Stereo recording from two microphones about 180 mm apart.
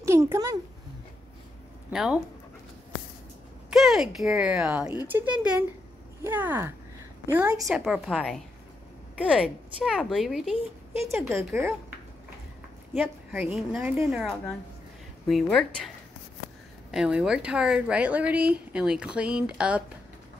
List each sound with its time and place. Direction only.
0.0 s a sound: 15° right (ahead or behind)
1.9 s speech: 5° right (ahead or behind)
3.7 s a woman's voice: centre (ahead or behind)
11.1 s a woman's voice: 15° right (ahead or behind)
13.3 s a woman's voice: 10° right (ahead or behind)
15.2 s a woman's voice: centre (ahead or behind)
16.9 s a woman's voice: 5° right (ahead or behind)